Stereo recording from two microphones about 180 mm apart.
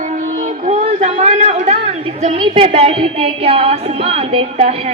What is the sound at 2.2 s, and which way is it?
A woman's voice, 35° right (ahead or behind).